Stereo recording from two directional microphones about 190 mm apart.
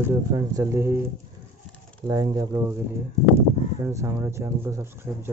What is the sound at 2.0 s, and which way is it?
Speech, 20° right (ahead or behind).